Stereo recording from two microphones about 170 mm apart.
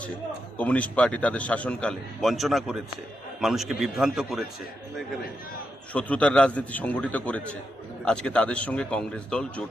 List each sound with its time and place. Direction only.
0.6 s a man's voice: 10° left (ahead or behind)
5.9 s a man's voice: 10° left (ahead or behind)